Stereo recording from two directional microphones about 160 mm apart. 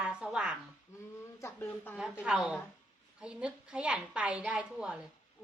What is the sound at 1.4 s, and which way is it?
Speech, 15° left (ahead or behind).